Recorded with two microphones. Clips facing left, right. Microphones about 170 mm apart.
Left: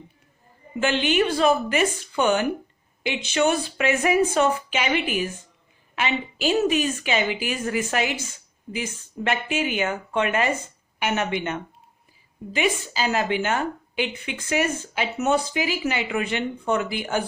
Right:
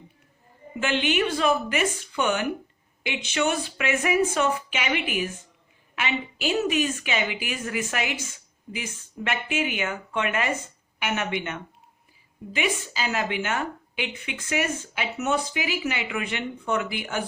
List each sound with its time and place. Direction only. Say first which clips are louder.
0.8 s a woman's voice: left 3 dB; 35° left (ahead or behind)